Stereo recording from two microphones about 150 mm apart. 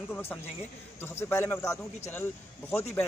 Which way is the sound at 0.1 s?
15° left (ahead or behind).